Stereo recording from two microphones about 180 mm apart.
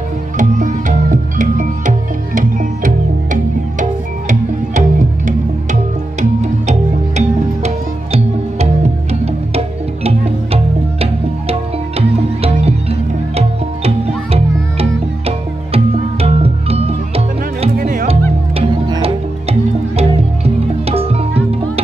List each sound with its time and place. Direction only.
0.4 s music: 45° right (ahead or behind)
4.3 s music: 45° right (ahead or behind)
17.7 s music: 50° right (ahead or behind)
18.6 s music: 30° right (ahead or behind)